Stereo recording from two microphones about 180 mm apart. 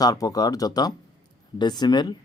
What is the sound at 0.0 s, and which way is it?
Speech, 20° left (ahead or behind).